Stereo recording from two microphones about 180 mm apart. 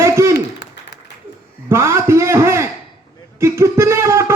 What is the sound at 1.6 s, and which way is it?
A man's voice, 15° right (ahead or behind).